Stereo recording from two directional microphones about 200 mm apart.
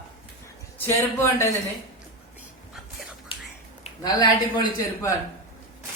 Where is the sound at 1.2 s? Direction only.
15° left (ahead or behind).